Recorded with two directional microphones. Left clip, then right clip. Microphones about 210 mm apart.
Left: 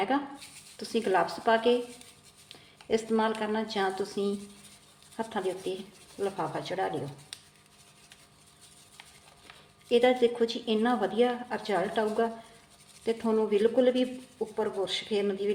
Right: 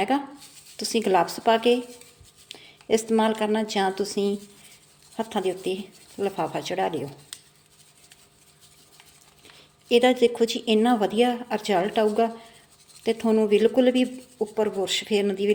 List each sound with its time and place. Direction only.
0.1 s a woman's voice: 35° right (ahead or behind)
9.9 s speech: 40° right (ahead or behind)